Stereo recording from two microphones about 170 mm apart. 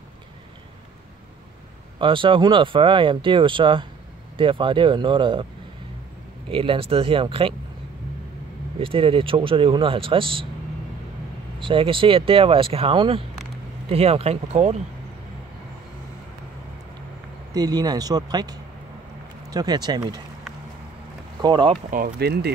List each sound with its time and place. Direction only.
2.0 s speech: 30° right (ahead or behind)
6.5 s speech: 30° right (ahead or behind)
8.7 s speech: 30° right (ahead or behind)
11.6 s speech: 30° right (ahead or behind)
17.6 s speech: 25° right (ahead or behind)
21.4 s speech: 25° right (ahead or behind)
21.9 s speech: 65° right (ahead or behind)